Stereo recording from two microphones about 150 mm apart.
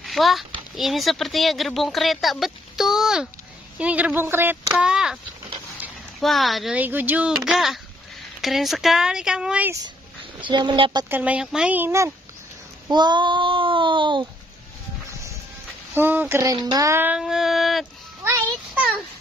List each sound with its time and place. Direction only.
0.0 s a child's voice: centre (ahead or behind)
10.4 s child singing: 30° right (ahead or behind)
11.1 s a child's voice: 10° right (ahead or behind)
12.9 s child singing: 30° right (ahead or behind)
15.9 s a child's voice: 15° right (ahead or behind)
16.5 s child singing: 30° right (ahead or behind)
16.8 s a child's voice: 15° right (ahead or behind)
17.2 s a sound: centre (ahead or behind)